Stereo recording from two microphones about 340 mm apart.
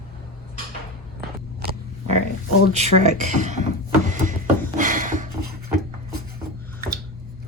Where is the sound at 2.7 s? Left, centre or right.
Centre.